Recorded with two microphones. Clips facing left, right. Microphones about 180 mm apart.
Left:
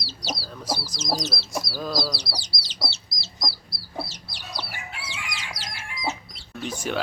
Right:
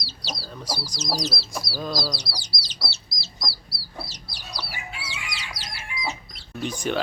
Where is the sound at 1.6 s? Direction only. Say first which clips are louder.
Right 1 dB; centre (ahead or behind).